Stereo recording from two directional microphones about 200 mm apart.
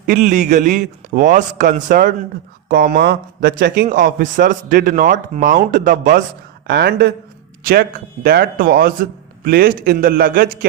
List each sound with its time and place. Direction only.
0.0 s a man's voice: 40° right (ahead or behind)
6.7 s a man's voice: 55° right (ahead or behind)